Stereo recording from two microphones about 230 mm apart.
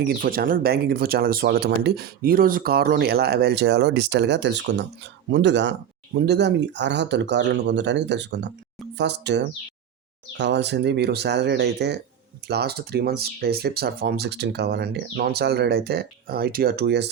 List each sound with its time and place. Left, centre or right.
0.0 s speech: right